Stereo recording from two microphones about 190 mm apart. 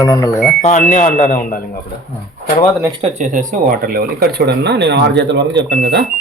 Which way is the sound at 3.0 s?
40° right (ahead or behind).